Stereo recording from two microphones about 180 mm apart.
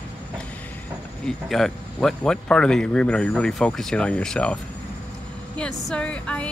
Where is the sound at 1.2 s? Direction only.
Centre (ahead or behind).